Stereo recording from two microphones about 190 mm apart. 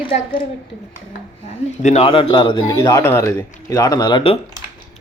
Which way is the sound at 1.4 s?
35° left (ahead or behind).